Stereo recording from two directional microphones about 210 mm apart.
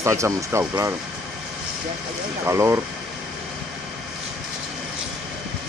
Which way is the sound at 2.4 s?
15° right (ahead or behind).